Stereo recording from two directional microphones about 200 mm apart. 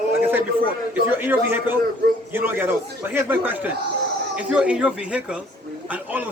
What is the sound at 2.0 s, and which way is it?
Speech, 55° right (ahead or behind).